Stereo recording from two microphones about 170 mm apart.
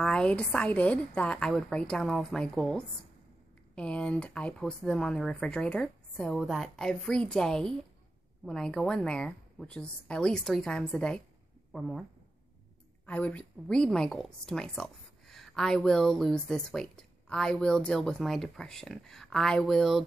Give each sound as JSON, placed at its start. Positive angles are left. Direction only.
{"t": 0.0, "sound": "a woman's voice", "side_deg": 5}
{"t": 13.0, "sound": "a woman's voice", "side_deg": 10}